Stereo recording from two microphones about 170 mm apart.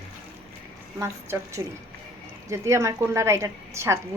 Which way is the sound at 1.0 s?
15° right (ahead or behind).